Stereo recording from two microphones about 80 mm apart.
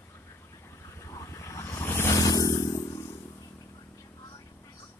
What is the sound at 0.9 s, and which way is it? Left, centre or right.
Vehicle, left.